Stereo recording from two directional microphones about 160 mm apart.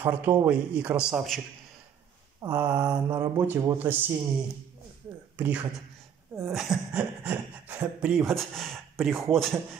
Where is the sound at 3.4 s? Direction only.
20° right (ahead or behind).